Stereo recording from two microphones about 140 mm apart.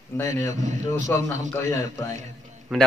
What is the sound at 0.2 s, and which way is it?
A man's voice, 20° left (ahead or behind).